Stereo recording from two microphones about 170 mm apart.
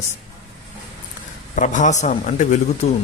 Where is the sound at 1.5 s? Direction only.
50° left (ahead or behind).